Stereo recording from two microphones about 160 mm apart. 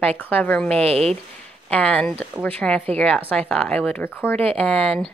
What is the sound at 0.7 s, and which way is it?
Speech, 40° right (ahead or behind).